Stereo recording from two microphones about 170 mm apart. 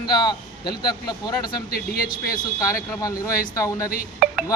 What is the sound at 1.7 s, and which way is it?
Speech, 60° left (ahead or behind).